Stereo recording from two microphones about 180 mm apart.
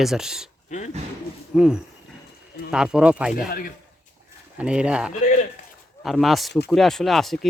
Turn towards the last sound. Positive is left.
turn(degrees=0)  # may be behind; listen again after turning